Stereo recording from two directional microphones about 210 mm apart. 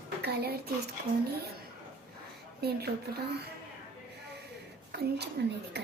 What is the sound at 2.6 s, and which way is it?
Speech, 50° right (ahead or behind).